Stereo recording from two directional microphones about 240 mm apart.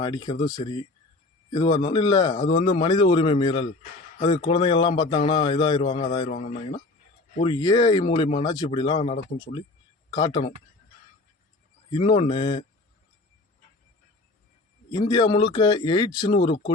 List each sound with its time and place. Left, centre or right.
0.0 s speech: centre
11.9 s speech: left
14.8 s speech: centre